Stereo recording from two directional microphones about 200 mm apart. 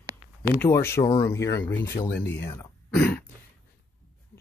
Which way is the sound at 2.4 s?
10° left (ahead or behind).